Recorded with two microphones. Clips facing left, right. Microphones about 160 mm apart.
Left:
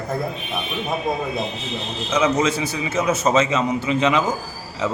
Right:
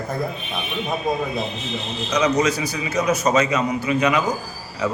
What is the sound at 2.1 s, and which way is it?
A man's voice, 25° left (ahead or behind).